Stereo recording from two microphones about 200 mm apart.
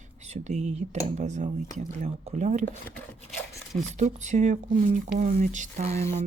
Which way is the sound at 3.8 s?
35° right (ahead or behind).